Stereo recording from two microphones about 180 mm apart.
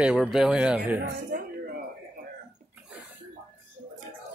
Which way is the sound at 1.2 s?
50° right (ahead or behind).